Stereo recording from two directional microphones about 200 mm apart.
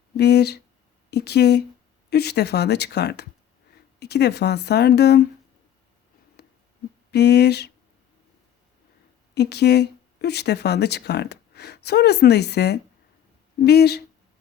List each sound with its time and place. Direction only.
0.2 s speech: 55° left (ahead or behind)
6.4 s a sound: 55° left (ahead or behind)
7.1 s speech: 55° left (ahead or behind)
9.3 s speech: 55° left (ahead or behind)